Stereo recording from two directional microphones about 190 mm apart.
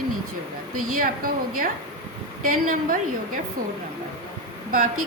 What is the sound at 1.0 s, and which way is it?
A woman's voice, 50° right (ahead or behind).